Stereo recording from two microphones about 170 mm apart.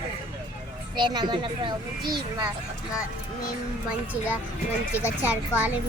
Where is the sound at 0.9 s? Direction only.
25° right (ahead or behind).